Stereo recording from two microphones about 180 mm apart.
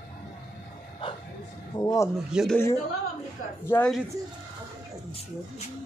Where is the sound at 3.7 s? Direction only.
5° left (ahead or behind).